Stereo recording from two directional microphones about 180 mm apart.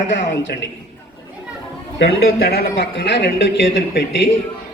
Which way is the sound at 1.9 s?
65° left (ahead or behind).